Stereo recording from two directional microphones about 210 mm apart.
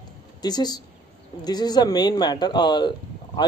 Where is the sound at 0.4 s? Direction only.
20° left (ahead or behind).